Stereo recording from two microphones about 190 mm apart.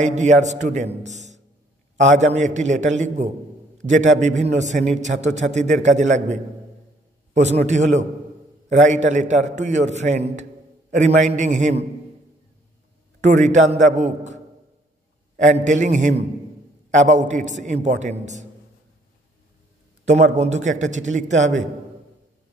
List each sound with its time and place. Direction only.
0.0 s a man's voice: 40° right (ahead or behind)
13.2 s a man's voice: 40° right (ahead or behind)
20.1 s a man's voice: 40° right (ahead or behind)